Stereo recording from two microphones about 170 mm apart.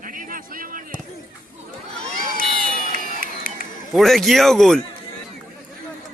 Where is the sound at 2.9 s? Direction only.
60° right (ahead or behind).